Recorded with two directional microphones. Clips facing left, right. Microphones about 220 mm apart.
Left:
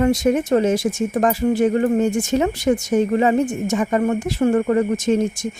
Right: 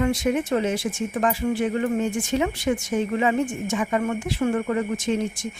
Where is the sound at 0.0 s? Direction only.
40° left (ahead or behind).